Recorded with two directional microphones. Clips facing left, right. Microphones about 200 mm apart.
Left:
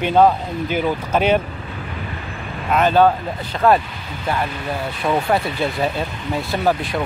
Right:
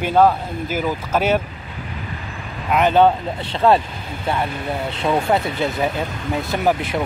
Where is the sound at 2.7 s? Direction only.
20° right (ahead or behind).